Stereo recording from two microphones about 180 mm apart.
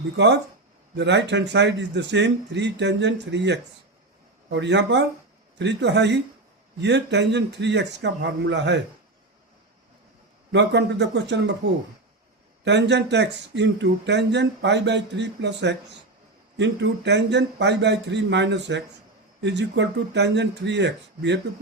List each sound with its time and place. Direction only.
0.9 s speech: 75° right (ahead or behind)
10.5 s speech: 75° right (ahead or behind)
12.6 s speech: 75° right (ahead or behind)